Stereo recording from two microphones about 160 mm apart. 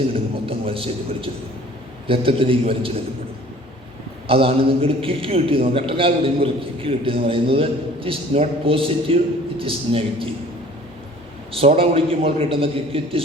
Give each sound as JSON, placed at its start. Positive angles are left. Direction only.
{"t": 0.4, "sound": "a man's voice", "side_deg": -35}
{"t": 4.3, "sound": "a man's voice", "side_deg": -35}
{"t": 11.5, "sound": "a man's voice", "side_deg": -35}